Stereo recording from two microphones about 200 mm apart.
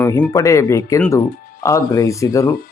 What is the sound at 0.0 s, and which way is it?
Speech, 15° left (ahead or behind).